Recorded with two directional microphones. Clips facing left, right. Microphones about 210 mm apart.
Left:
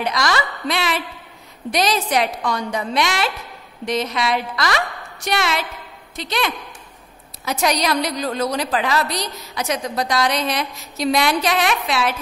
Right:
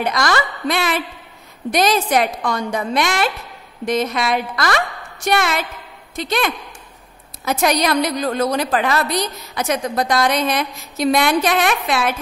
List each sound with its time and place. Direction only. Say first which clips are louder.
0.0 s a woman's voice: right 2 dB; 50° right (ahead or behind)